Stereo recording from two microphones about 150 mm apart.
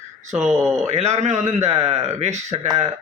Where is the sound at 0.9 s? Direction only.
45° right (ahead or behind).